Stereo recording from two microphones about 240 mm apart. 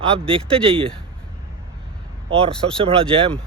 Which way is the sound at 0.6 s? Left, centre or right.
Right.